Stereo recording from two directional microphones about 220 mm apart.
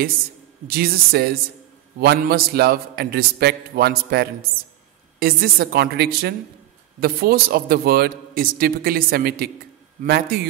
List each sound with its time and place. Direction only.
0.7 s a man's voice: 45° right (ahead or behind)